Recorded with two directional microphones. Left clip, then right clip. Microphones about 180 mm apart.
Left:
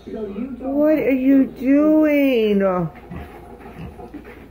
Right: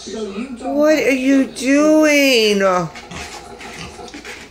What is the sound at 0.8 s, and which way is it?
Speech, 5° right (ahead or behind).